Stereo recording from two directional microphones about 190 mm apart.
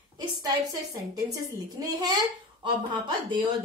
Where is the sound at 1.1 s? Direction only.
20° right (ahead or behind).